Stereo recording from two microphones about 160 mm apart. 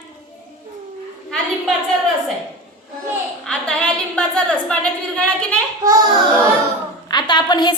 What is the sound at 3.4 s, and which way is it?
A woman's voice, 5° left (ahead or behind).